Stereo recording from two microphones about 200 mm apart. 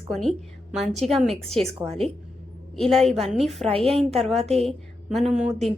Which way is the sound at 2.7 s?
Centre (ahead or behind).